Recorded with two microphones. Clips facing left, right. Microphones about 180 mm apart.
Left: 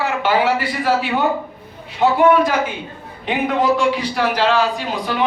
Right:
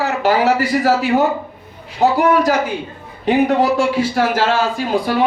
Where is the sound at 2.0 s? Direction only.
40° right (ahead or behind).